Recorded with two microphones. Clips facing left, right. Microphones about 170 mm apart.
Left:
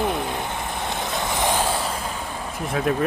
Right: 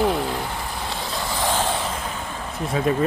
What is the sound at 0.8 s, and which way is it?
Vehicle, 20° left (ahead or behind).